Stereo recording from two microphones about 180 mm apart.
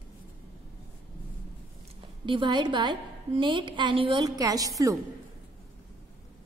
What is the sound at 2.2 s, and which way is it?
A woman's voice, 25° right (ahead or behind).